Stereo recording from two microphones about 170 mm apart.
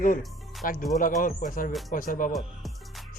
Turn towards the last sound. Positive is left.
turn(degrees=0)  # may be behind; listen again after turning